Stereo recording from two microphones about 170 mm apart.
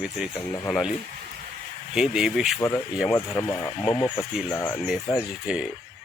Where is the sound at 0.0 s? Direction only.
5° right (ahead or behind).